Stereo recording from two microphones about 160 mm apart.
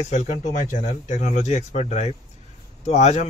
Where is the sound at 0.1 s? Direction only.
50° left (ahead or behind).